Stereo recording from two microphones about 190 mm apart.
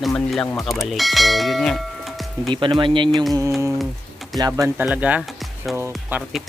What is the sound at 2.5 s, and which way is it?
Speech, 25° right (ahead or behind).